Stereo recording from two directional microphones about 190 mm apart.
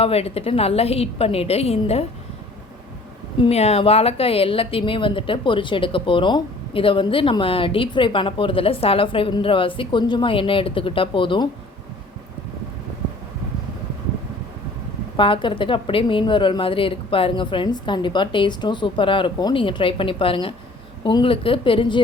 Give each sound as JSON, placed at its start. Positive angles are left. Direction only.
{"t": 0.0, "sound": "a woman's voice", "side_deg": 30}
{"t": 3.4, "sound": "speech", "side_deg": 35}
{"t": 15.1, "sound": "speech", "side_deg": 25}